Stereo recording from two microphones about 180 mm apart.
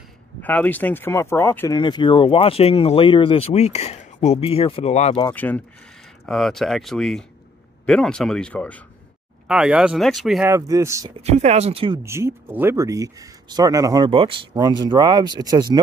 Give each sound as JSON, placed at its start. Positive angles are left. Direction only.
{"t": 0.4, "sound": "speech", "side_deg": 10}
{"t": 1.7, "sound": "speech", "side_deg": 25}
{"t": 5.3, "sound": "speech", "side_deg": 10}
{"t": 9.5, "sound": "speech", "side_deg": -5}
{"t": 10.5, "sound": "speech", "side_deg": -15}
{"t": 11.2, "sound": "speech", "side_deg": -35}
{"t": 12.0, "sound": "speech", "side_deg": -15}